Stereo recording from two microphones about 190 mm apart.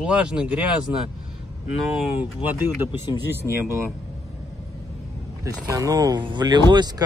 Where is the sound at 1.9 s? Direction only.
10° right (ahead or behind).